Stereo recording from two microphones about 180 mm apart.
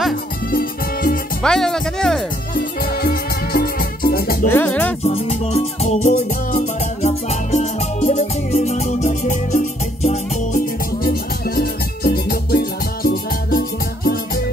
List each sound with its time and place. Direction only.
0.5 s music: 55° left (ahead or behind)
1.4 s speech: 5° left (ahead or behind)
2.5 s music: 55° left (ahead or behind)
4.5 s music: 10° left (ahead or behind)
5.0 s music: 35° left (ahead or behind); by 14.4 s 55° left (ahead or behind)